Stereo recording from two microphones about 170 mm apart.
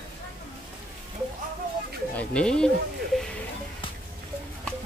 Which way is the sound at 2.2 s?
5° left (ahead or behind).